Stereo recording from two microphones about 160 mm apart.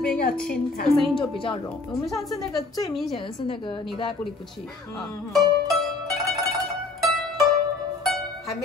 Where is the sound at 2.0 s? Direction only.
20° left (ahead or behind).